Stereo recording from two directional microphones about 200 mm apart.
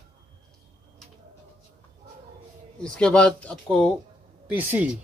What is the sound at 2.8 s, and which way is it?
Speech, 5° left (ahead or behind).